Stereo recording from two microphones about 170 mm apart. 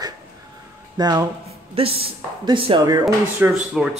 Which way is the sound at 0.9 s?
25° right (ahead or behind).